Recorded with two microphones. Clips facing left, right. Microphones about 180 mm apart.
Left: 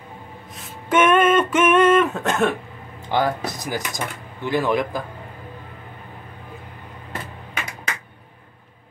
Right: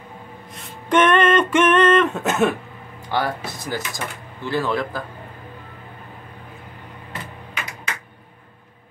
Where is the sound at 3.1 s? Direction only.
20° left (ahead or behind).